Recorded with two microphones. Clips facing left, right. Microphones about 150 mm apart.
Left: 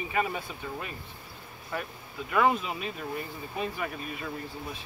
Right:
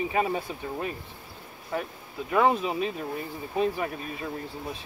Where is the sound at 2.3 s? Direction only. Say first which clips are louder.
Right 3 dB; 30° right (ahead or behind).